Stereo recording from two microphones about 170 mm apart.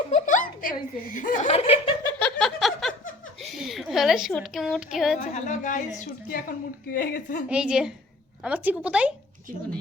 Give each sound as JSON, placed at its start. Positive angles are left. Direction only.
{"t": 0.1, "sound": "giggle", "side_deg": 50}
{"t": 1.5, "sound": "snicker", "side_deg": 35}
{"t": 2.0, "sound": "a sound", "side_deg": 10}
{"t": 3.4, "sound": "a woman's voice", "side_deg": 0}
{"t": 5.3, "sound": "a woman's voice", "side_deg": 45}
{"t": 6.9, "sound": "a woman's voice", "side_deg": 60}
{"t": 7.4, "sound": "a woman's voice", "side_deg": -5}